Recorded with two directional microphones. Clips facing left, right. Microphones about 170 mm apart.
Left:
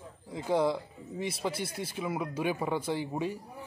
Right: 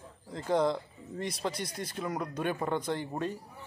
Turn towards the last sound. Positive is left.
turn(degrees=10)  # may be behind; listen again after turning